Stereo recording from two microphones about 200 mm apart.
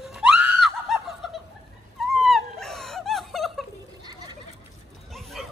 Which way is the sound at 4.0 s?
20° right (ahead or behind).